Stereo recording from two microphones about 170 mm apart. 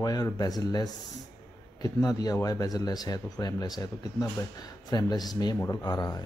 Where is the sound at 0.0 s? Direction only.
20° left (ahead or behind).